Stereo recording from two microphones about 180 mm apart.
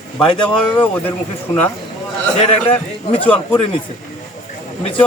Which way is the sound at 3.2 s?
10° left (ahead or behind).